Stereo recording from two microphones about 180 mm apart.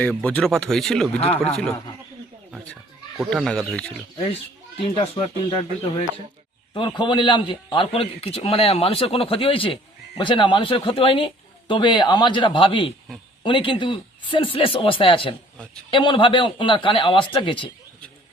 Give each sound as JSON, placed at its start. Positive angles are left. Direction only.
{"t": 0.0, "sound": "speech", "side_deg": 5}
{"t": 1.2, "sound": "speech", "side_deg": 35}
{"t": 3.2, "sound": "speech", "side_deg": 0}
{"t": 4.9, "sound": "a man's voice", "side_deg": 30}